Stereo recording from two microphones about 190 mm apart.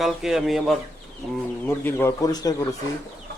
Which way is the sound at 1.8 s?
15° left (ahead or behind).